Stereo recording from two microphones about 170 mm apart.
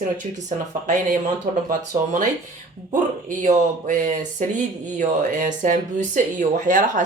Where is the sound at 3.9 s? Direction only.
50° right (ahead or behind).